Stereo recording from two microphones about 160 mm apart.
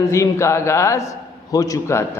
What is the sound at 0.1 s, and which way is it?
A man's voice, 20° left (ahead or behind).